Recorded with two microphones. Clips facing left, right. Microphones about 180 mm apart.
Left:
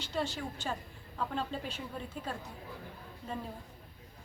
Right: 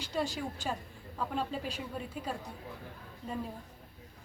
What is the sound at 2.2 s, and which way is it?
Speech, 5° right (ahead or behind).